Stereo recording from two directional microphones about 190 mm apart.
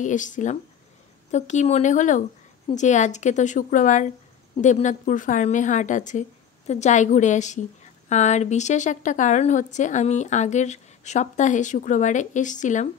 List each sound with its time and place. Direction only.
0.0 s a woman's voice: 40° left (ahead or behind)